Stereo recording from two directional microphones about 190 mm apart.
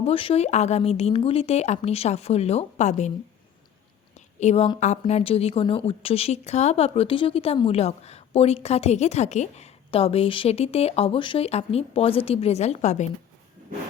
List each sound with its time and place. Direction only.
0.0 s a woman's voice: 30° left (ahead or behind)
4.4 s a woman's voice: 35° left (ahead or behind)